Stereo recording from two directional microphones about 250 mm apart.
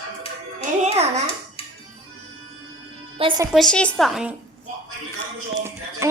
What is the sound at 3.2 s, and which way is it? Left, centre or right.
Speech, centre.